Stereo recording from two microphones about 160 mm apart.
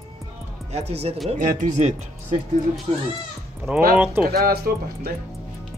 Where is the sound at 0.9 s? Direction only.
40° right (ahead or behind).